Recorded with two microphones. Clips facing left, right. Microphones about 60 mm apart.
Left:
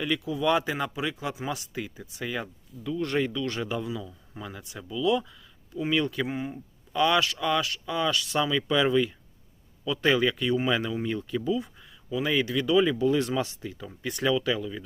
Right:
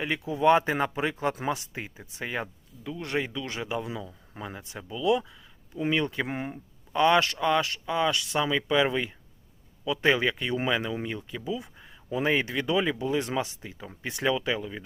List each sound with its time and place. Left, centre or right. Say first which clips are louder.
0.0 s speech: right 3 dB; right
1.5 s speech: left 3 dB; right
2.8 s speech: left 3 dB; centre
6.2 s speech: left 1 dB; right
7.0 s speech: right 2 dB; right